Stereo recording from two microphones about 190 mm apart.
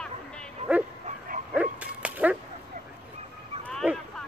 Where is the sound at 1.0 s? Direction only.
45° right (ahead or behind).